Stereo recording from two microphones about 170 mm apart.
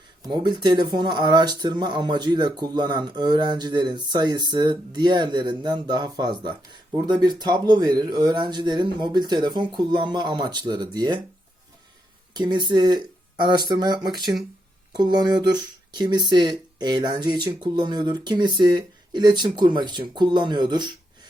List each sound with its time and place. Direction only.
0.2 s speech: 25° right (ahead or behind)
12.3 s speech: 25° right (ahead or behind)